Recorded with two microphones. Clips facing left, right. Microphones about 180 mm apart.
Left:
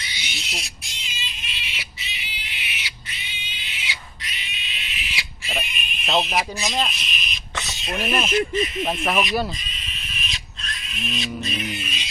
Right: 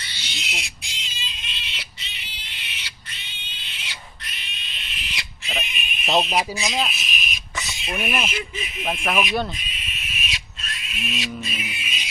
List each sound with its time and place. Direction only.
0.0 s bird: 10° left (ahead or behind)
1.0 s a sound: 10° left (ahead or behind)
4.4 s quack: 10° left (ahead or behind)
5.5 s a sound: centre (ahead or behind)
7.9 s speech: 10° right (ahead or behind)
11.8 s music: 10° right (ahead or behind)